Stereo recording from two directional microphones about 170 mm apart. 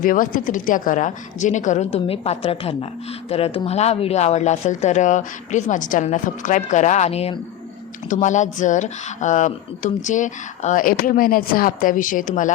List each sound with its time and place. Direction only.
0.0 s speech: 55° left (ahead or behind)